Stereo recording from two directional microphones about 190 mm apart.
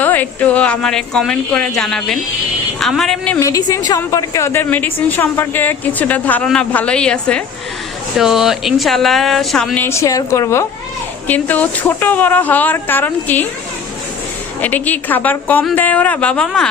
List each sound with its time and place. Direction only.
0.0 s speech: 10° left (ahead or behind)
3.5 s a woman's voice: 20° left (ahead or behind)
14.6 s a woman's voice: 10° left (ahead or behind)